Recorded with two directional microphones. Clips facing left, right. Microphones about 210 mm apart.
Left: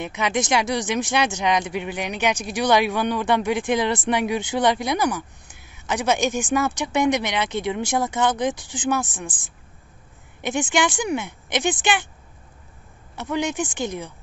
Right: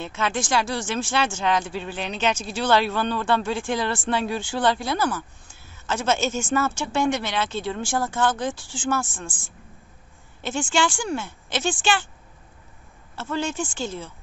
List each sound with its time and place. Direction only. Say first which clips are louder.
0.0 s speech: left 3 dB; 15° left (ahead or behind)
10.4 s speech: left 2 dB; 15° left (ahead or behind)
13.1 s speech: left 2 dB; 15° left (ahead or behind)